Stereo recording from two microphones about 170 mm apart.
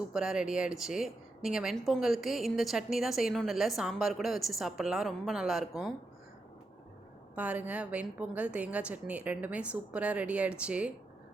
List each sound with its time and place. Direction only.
0.1 s a woman's voice: 5° right (ahead or behind)
7.3 s a woman's voice: 10° right (ahead or behind)